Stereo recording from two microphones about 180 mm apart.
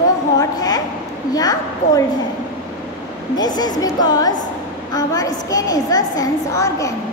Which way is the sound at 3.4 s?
20° left (ahead or behind).